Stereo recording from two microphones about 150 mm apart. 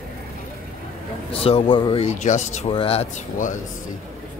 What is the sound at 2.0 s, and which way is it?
Speech, 50° left (ahead or behind).